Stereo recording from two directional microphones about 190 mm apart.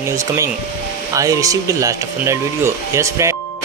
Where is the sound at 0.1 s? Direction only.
15° right (ahead or behind).